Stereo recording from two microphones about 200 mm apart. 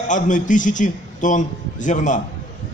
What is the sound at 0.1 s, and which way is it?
A man's voice, 40° left (ahead or behind).